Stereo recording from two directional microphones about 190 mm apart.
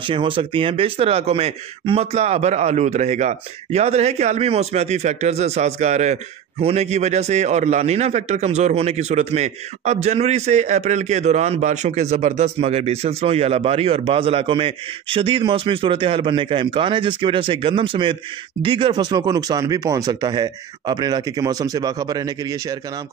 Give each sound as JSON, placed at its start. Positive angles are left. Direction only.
{"t": 0.0, "sound": "a man's voice", "side_deg": -25}